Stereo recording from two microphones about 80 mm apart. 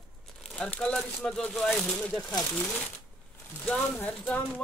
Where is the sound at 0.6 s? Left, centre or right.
Centre.